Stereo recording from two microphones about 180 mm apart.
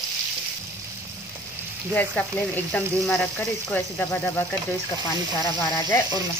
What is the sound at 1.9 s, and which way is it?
Speech, 10° left (ahead or behind).